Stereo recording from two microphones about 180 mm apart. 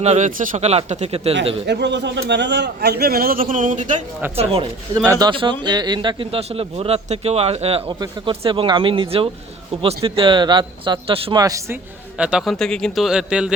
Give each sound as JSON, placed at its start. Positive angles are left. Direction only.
{"t": 0.0, "sound": "speech", "side_deg": -40}
{"t": 1.6, "sound": "a man's voice", "side_deg": -70}
{"t": 4.4, "sound": "speech", "side_deg": -30}
{"t": 12.1, "sound": "speech", "side_deg": -5}